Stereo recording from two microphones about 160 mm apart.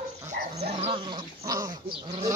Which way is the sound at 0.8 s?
30° right (ahead or behind).